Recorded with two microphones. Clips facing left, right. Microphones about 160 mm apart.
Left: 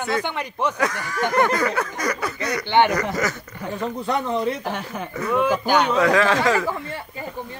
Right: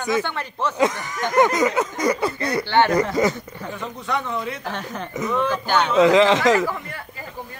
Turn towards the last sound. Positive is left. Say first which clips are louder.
# right 3 dB
turn(degrees=-20)  # may be behind; listen again after turning